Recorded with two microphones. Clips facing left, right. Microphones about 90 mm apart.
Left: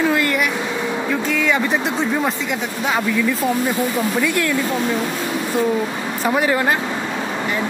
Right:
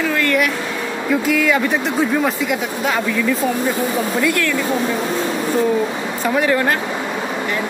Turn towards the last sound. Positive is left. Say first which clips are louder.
# right 1 dB
turn(degrees=10)  # may be behind; listen again after turning